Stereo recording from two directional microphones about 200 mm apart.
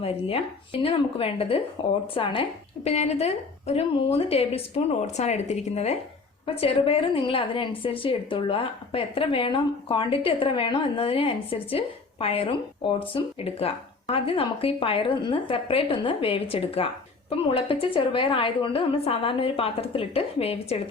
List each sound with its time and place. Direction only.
0.0 s a woman's voice: 30° left (ahead or behind)